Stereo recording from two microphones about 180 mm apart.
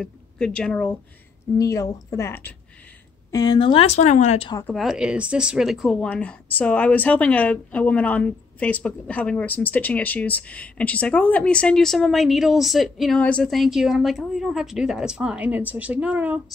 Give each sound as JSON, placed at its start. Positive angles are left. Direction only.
{"t": 0.0, "sound": "a woman's voice", "side_deg": 5}
{"t": 1.6, "sound": "a woman's voice", "side_deg": 20}
{"t": 4.6, "sound": "speech", "side_deg": 0}